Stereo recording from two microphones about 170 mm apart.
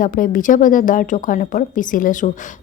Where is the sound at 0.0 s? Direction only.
55° left (ahead or behind).